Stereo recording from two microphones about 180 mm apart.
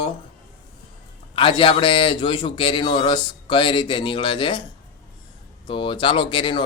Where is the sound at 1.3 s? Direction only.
30° left (ahead or behind).